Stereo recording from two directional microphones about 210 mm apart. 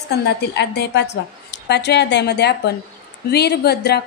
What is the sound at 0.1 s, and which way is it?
A woman's voice, 50° left (ahead or behind).